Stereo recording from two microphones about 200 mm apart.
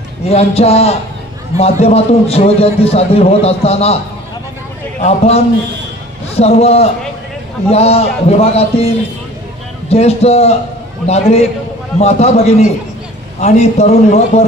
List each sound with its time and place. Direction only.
0.3 s a man's voice: 30° left (ahead or behind)
5.0 s a man's voice: 30° left (ahead or behind)